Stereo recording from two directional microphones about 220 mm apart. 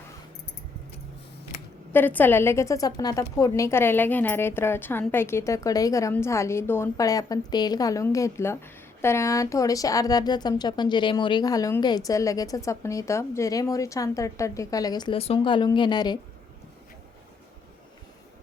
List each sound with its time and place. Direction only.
1.9 s a woman's voice: 10° left (ahead or behind)